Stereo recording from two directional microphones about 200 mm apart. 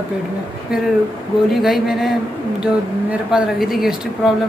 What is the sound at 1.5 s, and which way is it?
Speech, centre (ahead or behind).